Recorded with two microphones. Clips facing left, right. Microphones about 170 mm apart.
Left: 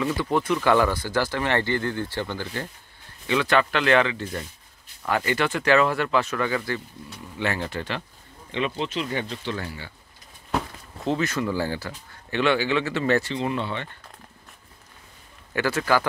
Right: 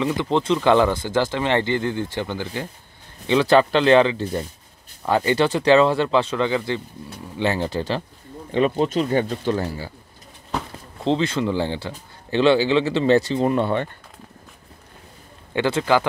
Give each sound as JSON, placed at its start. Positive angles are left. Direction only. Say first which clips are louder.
{"t": 0.0, "sound": "speech", "louder": "right 3 dB", "side_deg": -20}
{"t": 3.3, "sound": "speech", "louder": "right 6 dB", "side_deg": -30}
{"t": 11.1, "sound": "speech", "louder": "right 4 dB", "side_deg": -25}
{"t": 13.4, "sound": "speech", "louder": "right 7 dB", "side_deg": -50}
{"t": 15.5, "sound": "speech", "louder": "right 4 dB", "side_deg": -25}